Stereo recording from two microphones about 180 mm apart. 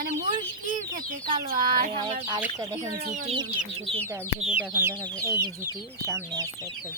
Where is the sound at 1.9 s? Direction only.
25° right (ahead or behind).